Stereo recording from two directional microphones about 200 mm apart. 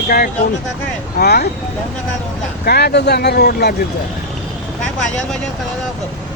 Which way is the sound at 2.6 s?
55° left (ahead or behind).